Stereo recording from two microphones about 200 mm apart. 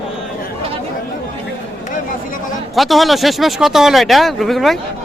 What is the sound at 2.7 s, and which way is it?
Speech, centre (ahead or behind).